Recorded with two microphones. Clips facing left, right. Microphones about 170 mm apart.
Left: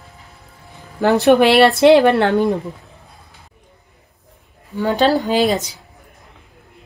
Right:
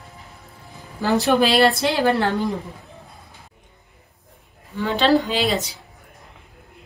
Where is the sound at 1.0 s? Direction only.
65° left (ahead or behind).